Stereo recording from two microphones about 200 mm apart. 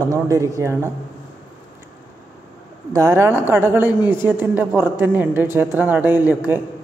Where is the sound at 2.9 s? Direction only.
15° right (ahead or behind).